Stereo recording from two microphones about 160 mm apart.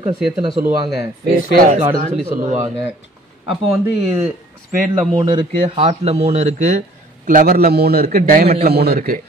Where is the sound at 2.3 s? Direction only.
50° right (ahead or behind).